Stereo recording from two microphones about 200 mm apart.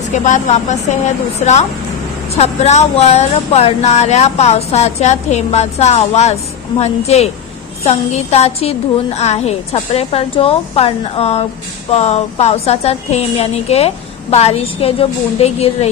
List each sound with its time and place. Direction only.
0.1 s a woman's voice: 35° left (ahead or behind)